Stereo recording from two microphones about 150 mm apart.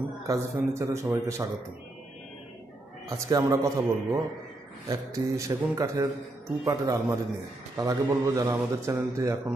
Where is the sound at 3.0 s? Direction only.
20° right (ahead or behind).